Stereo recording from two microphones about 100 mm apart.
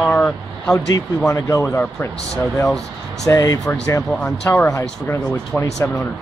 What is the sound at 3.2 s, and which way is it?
Speech, 35° left (ahead or behind).